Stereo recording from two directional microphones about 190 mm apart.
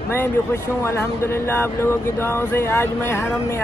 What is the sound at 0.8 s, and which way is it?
Speech, 15° left (ahead or behind).